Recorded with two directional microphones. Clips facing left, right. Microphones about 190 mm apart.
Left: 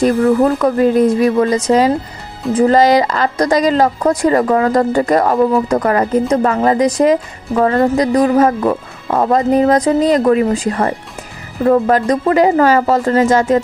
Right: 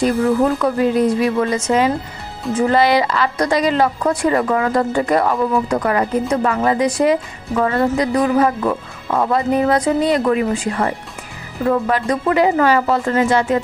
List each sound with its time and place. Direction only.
0.0 s a woman's voice: 45° left (ahead or behind)